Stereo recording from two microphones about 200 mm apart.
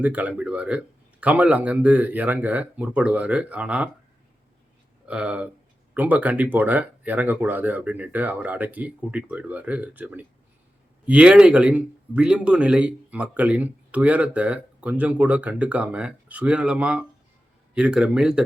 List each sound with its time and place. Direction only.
0.0 s speech: 5° right (ahead or behind)
5.0 s speech: 5° right (ahead or behind)